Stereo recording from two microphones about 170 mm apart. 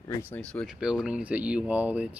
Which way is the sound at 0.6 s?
5° right (ahead or behind).